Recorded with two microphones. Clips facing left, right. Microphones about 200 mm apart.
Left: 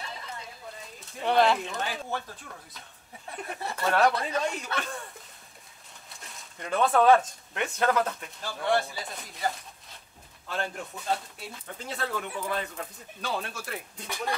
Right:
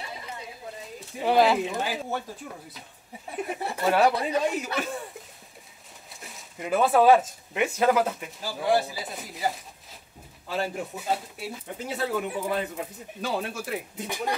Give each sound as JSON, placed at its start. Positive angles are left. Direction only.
{"t": 1.1, "sound": "speech", "side_deg": -5}
{"t": 3.5, "sound": "speech", "side_deg": -15}
{"t": 3.8, "sound": "speech", "side_deg": -5}
{"t": 14.0, "sound": "speech", "side_deg": -15}